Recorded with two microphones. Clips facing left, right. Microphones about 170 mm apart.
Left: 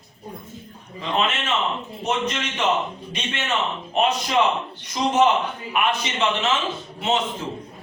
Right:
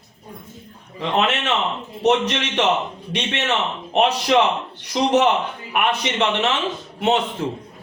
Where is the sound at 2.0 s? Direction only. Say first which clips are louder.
Right 8 dB; 70° right (ahead or behind).